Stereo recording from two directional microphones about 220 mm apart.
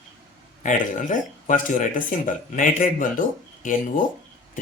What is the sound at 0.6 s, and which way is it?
Speech, 35° left (ahead or behind).